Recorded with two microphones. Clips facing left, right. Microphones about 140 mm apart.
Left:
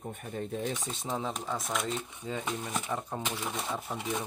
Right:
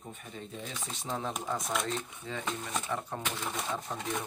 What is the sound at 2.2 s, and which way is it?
Speech, 10° left (ahead or behind).